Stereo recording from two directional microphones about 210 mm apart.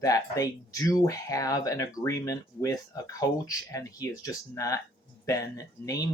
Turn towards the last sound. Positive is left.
turn(degrees=15)  # may be behind; listen again after turning